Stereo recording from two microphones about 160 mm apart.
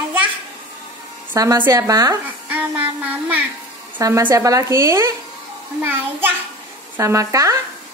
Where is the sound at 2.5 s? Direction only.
10° right (ahead or behind).